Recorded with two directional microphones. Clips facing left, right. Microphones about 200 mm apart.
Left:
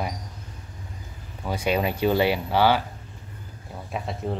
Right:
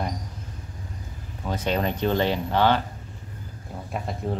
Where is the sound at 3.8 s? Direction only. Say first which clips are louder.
Even; centre (ahead or behind).